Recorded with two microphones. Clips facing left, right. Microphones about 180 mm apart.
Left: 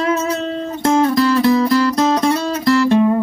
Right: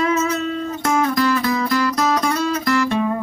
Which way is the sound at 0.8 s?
30° left (ahead or behind).